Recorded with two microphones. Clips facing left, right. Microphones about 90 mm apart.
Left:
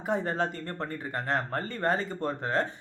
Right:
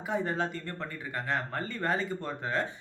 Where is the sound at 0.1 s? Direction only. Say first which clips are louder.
Left 2 dB; 40° left (ahead or behind).